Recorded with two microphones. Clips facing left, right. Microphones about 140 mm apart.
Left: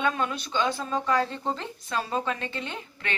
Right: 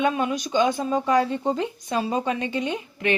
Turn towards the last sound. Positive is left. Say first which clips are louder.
# right 10 dB
turn(degrees=-15)  # may be behind; listen again after turning